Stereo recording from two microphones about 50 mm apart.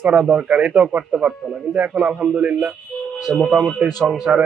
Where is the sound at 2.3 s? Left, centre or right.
Right.